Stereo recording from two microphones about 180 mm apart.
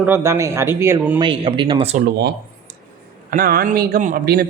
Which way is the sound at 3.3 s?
55° right (ahead or behind).